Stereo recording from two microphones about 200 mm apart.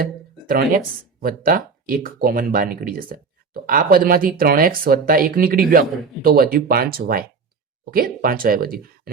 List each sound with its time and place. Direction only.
0.0 s music: 45° right (ahead or behind)
1.2 s speech: 45° right (ahead or behind)